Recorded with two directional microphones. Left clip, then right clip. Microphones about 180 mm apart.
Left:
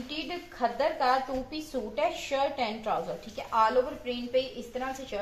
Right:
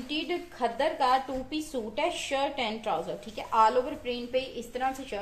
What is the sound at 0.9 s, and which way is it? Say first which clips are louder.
A woman's voice: right 1 dB; 30° right (ahead or behind).